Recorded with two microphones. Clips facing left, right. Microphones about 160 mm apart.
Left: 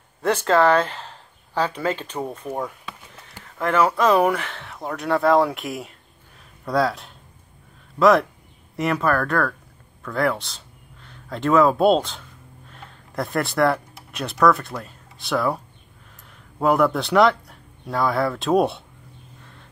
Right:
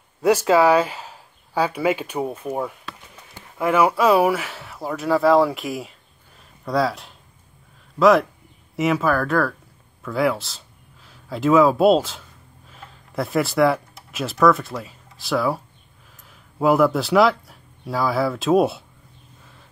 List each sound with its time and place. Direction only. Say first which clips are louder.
0.2 s speech: right 2 dB; 10° right (ahead or behind)